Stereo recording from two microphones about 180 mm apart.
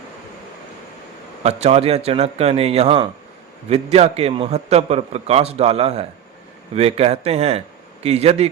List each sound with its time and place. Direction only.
1.5 s a man's voice: 35° right (ahead or behind)